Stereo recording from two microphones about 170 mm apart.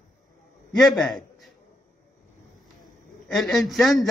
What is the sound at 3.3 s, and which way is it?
Speech, centre (ahead or behind).